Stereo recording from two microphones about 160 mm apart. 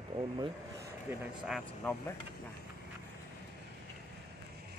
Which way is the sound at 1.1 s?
15° right (ahead or behind).